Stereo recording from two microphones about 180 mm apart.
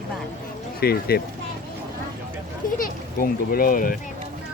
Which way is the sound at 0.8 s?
60° left (ahead or behind).